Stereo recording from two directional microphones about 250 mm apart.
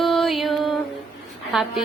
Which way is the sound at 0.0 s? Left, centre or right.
Centre.